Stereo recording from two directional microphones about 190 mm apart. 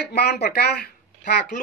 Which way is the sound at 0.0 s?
60° left (ahead or behind).